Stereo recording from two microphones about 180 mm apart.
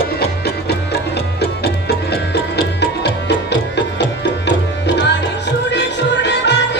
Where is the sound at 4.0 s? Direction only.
85° left.